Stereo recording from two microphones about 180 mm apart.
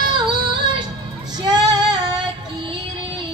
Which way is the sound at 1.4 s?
20° right (ahead or behind).